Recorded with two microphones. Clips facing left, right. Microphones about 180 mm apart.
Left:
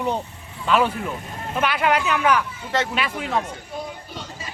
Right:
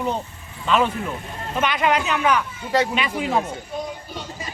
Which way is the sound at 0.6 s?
10° left (ahead or behind).